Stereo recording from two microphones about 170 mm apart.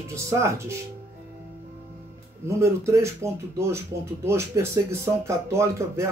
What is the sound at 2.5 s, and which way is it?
Speech, 15° right (ahead or behind).